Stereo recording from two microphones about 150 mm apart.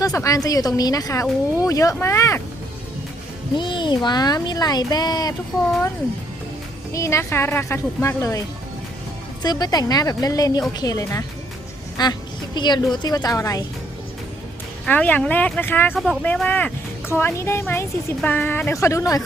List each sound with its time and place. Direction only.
0.0 s speech: 25° left (ahead or behind)
3.6 s speech: 30° left (ahead or behind)
6.9 s speech: 20° left (ahead or behind)
14.8 s speech: 10° left (ahead or behind)